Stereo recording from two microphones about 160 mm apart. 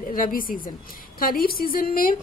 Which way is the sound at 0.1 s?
60° left (ahead or behind).